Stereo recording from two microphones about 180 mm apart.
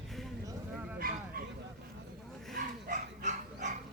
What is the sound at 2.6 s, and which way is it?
Dog, 45° right (ahead or behind).